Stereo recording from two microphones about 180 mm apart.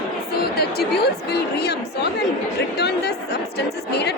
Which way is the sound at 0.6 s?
60° left (ahead or behind).